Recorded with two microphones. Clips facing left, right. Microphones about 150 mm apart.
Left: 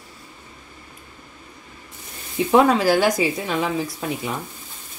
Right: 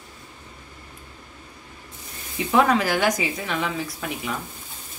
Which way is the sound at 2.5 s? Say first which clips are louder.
Left 4 dB; 35° left (ahead or behind).